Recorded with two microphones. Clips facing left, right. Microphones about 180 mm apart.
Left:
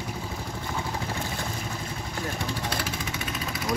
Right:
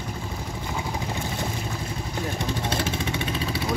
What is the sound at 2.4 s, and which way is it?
Vehicle, 25° right (ahead or behind).